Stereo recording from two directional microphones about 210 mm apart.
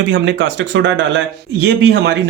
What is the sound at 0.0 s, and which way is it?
Speech, 60° right (ahead or behind).